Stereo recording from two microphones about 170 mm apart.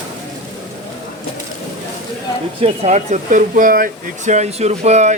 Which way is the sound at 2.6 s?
45° right (ahead or behind).